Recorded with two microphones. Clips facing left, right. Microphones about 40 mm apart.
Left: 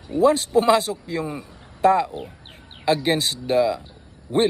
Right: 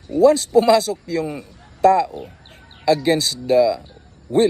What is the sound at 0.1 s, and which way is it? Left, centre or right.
A man's voice, left.